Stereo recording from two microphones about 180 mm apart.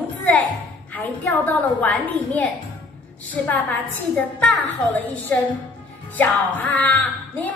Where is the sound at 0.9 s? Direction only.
10° left (ahead or behind).